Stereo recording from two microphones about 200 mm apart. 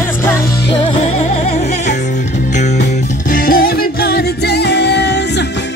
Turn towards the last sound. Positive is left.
turn(degrees=55)  # may be behind; listen again after turning